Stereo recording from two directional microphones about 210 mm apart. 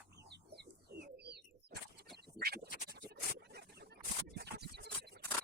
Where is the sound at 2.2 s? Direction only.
50° right (ahead or behind).